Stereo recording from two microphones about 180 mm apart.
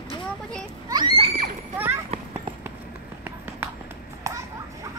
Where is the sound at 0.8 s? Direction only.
25° right (ahead or behind).